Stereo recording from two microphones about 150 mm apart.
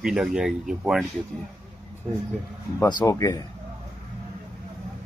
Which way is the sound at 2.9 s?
25° left (ahead or behind).